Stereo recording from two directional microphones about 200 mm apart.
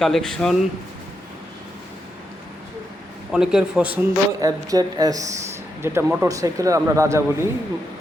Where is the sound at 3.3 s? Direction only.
5° right (ahead or behind).